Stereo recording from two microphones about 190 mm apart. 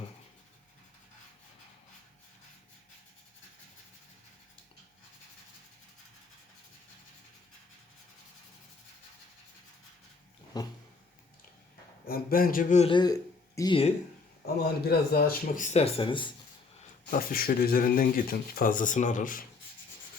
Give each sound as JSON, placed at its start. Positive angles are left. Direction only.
{"t": 10.5, "sound": "a sound", "side_deg": 20}
{"t": 12.0, "sound": "speech", "side_deg": 50}
{"t": 12.8, "sound": "a man's voice", "side_deg": 25}
{"t": 14.4, "sound": "speech", "side_deg": 55}
{"t": 17.1, "sound": "speech", "side_deg": 50}